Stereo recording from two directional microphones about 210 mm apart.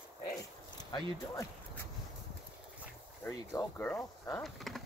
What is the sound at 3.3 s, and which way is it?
Speech, 15° left (ahead or behind).